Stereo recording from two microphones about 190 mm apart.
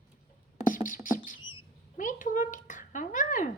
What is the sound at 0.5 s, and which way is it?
Music, 45° left (ahead or behind).